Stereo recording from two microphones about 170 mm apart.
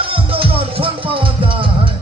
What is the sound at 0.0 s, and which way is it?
Music, 30° right (ahead or behind).